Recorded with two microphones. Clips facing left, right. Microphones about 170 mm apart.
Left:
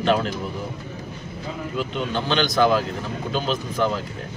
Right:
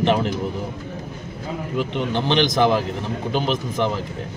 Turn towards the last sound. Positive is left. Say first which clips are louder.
# right 1 dB
turn(degrees=-20)  # may be behind; listen again after turning